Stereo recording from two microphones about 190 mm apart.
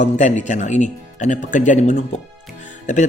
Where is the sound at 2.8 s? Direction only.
40° left (ahead or behind).